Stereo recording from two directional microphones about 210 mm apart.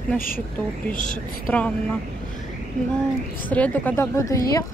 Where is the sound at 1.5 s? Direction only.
5° left (ahead or behind).